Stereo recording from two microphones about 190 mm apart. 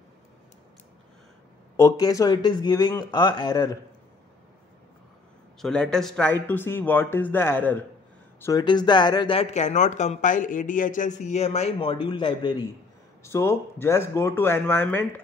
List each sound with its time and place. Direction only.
1.8 s speech: 15° left (ahead or behind)
5.6 s speech: 5° left (ahead or behind); by 12.6 s 25° left (ahead or behind)
13.2 s speech: 15° left (ahead or behind)